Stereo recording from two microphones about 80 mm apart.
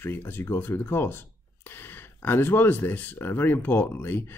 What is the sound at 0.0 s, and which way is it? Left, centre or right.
Speech, left.